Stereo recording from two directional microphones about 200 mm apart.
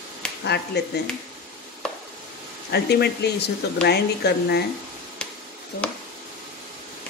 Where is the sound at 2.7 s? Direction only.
55° left (ahead or behind).